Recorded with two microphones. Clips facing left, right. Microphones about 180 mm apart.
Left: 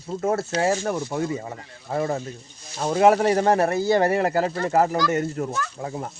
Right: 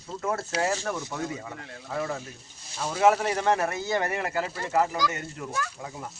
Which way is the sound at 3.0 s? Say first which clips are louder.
Left 5 dB; 40° left (ahead or behind).